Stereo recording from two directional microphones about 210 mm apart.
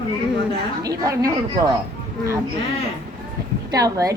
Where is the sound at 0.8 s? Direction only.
15° right (ahead or behind).